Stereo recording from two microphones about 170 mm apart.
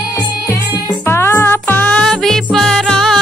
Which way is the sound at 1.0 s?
15° left (ahead or behind).